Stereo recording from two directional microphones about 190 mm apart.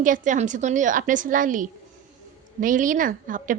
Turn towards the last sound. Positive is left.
turn(degrees=-45)  # may be behind; listen again after turning